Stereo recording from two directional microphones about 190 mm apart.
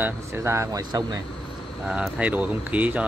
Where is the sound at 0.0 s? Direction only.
15° right (ahead or behind).